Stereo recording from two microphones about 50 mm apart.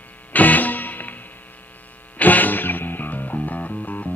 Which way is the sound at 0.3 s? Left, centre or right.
Left.